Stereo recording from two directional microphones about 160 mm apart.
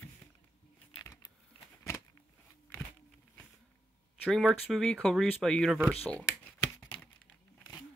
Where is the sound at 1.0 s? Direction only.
20° left (ahead or behind).